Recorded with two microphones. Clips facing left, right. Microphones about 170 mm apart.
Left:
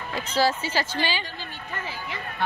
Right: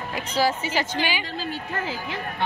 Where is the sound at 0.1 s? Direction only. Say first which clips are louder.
Even; 15° right (ahead or behind).